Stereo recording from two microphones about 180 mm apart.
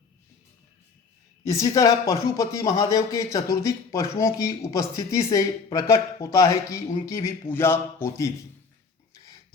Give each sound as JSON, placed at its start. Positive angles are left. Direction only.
{"t": 1.5, "sound": "speech", "side_deg": 20}